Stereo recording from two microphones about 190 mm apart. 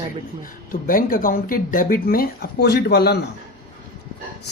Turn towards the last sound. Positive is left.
turn(degrees=60)  # may be behind; listen again after turning